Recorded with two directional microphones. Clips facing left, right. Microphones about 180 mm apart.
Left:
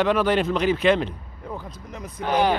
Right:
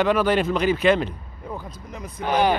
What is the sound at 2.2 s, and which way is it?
Speech, 15° right (ahead or behind).